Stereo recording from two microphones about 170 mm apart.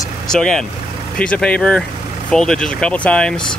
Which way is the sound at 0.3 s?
5° left (ahead or behind).